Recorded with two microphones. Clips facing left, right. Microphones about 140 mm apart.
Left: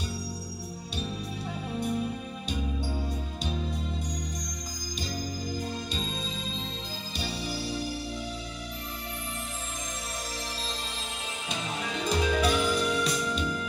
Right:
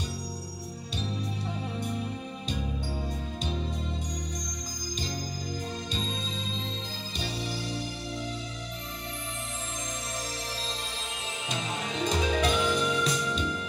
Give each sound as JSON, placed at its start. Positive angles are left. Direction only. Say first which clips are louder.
{"t": 12.1, "sound": "music", "louder": "left 2 dB", "side_deg": 5}